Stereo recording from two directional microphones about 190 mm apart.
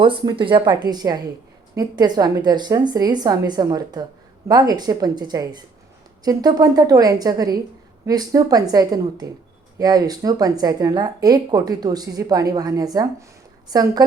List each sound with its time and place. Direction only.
0.0 s speech: 25° right (ahead or behind)